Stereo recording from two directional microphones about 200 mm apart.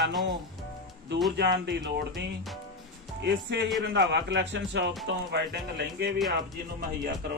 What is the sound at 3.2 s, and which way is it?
Speech, 55° right (ahead or behind).